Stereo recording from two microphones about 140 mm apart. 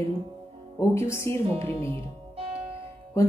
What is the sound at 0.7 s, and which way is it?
Speech, 20° left (ahead or behind).